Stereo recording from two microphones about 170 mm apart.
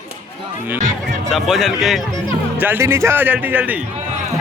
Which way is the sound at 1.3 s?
Centre (ahead or behind).